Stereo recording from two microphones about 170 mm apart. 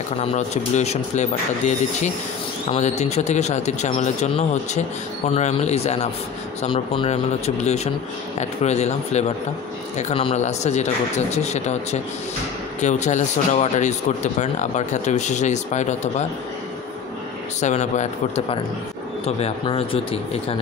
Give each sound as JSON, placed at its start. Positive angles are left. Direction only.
{"t": 0.2, "sound": "speech", "side_deg": 40}
{"t": 17.6, "sound": "speech", "side_deg": 45}